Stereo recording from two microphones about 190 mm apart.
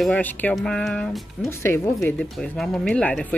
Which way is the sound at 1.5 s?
15° left (ahead or behind).